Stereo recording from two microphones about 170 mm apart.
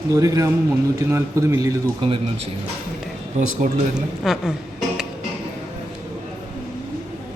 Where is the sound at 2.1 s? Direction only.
35° right (ahead or behind).